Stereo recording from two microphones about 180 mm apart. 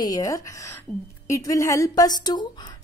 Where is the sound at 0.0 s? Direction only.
20° left (ahead or behind).